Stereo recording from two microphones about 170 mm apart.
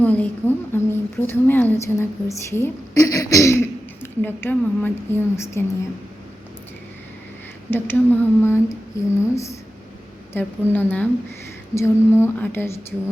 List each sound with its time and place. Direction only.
0.0 s a woman's voice: 10° left (ahead or behind)
7.7 s speech: 10° left (ahead or behind)